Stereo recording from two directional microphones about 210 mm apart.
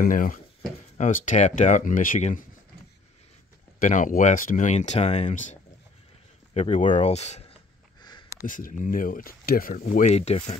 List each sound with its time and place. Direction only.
0.0 s speech: 40° left (ahead or behind)
3.8 s speech: 40° left (ahead or behind)
8.0 s a sound: 20° left (ahead or behind)
8.5 s speech: 40° left (ahead or behind)